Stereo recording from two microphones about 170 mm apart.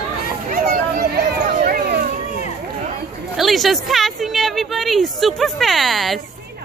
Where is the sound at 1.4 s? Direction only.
60° right (ahead or behind).